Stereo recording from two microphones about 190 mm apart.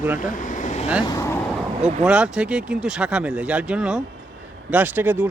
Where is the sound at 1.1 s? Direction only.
15° left (ahead or behind).